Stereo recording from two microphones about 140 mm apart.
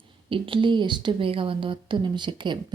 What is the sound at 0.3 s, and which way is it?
Speech, 40° right (ahead or behind).